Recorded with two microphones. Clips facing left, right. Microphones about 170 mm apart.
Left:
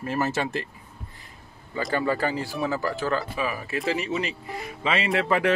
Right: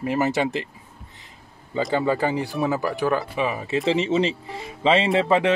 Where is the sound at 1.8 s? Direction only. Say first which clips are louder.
Right 3 dB; 20° right (ahead or behind).